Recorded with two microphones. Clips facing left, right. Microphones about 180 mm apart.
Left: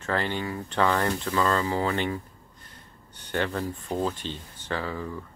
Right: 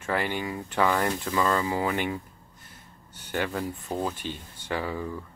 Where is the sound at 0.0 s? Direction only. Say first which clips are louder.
Even; 10° right (ahead or behind).